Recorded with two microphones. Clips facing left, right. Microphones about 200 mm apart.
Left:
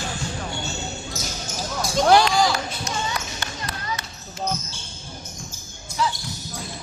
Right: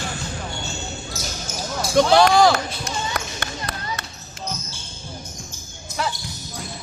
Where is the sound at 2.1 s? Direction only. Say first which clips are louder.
Right 2 dB; 60° right (ahead or behind).